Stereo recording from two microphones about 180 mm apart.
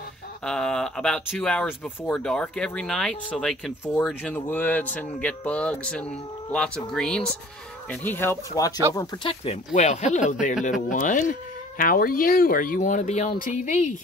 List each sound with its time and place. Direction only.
0.5 s speech: 5° left (ahead or behind)
8.9 s speech: 30° left (ahead or behind)